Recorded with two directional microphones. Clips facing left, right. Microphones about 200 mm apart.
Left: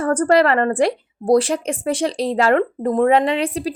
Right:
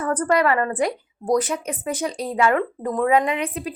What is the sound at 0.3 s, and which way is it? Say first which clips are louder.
Speech: left 4 dB; 75° left (ahead or behind).